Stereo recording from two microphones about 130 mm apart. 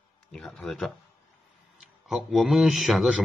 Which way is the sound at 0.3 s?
5° left (ahead or behind).